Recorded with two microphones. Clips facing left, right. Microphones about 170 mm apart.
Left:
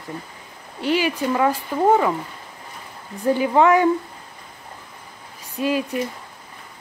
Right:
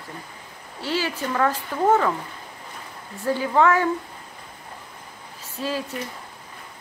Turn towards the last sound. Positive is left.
turn(degrees=15)  # may be behind; listen again after turning